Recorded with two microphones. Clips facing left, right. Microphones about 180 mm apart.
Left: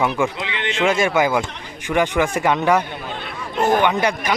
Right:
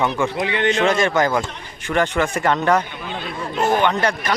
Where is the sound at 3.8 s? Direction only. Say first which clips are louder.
Left 1 dB; 10° left (ahead or behind).